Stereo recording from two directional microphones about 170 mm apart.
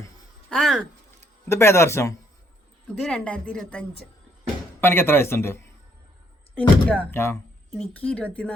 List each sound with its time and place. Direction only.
0.5 s speech: centre (ahead or behind)
1.5 s speech: 15° left (ahead or behind)
2.8 s speech: 5° left (ahead or behind)